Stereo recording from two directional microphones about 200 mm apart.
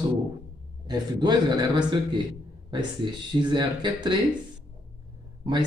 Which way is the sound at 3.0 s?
25° right (ahead or behind).